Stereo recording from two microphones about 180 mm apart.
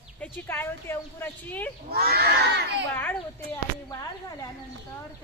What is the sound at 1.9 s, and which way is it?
Speech, 60° right (ahead or behind).